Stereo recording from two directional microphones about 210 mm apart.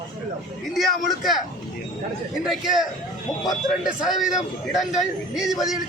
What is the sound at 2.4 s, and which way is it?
Speech, centre (ahead or behind).